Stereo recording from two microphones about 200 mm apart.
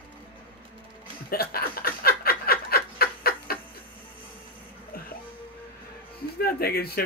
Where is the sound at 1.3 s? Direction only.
50° left (ahead or behind).